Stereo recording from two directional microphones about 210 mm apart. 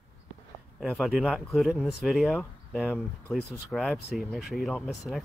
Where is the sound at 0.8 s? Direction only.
Centre (ahead or behind).